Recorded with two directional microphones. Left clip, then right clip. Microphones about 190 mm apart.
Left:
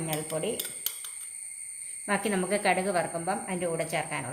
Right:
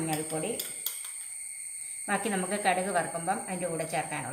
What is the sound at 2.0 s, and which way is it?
Speech, 45° left (ahead or behind).